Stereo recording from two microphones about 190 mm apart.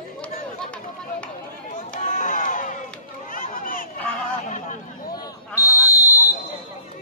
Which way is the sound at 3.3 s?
45° left (ahead or behind).